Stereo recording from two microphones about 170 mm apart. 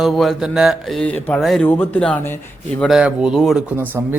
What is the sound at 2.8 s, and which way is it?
Speech, 5° right (ahead or behind).